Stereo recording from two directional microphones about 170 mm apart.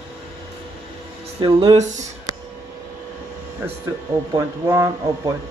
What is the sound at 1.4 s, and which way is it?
Speech, 25° right (ahead or behind).